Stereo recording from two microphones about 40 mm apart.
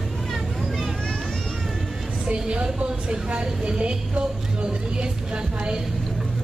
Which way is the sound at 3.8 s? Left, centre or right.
Right.